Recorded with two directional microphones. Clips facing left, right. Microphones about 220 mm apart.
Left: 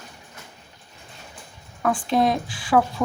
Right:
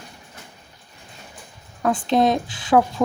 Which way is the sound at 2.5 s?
20° right (ahead or behind).